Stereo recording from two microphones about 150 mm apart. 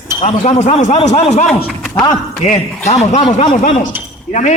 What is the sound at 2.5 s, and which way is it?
Speech, 50° left (ahead or behind).